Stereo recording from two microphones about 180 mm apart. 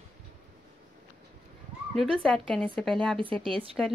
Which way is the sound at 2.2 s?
5° left (ahead or behind).